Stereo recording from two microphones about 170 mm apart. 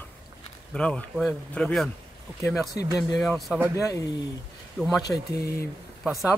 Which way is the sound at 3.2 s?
Centre (ahead or behind).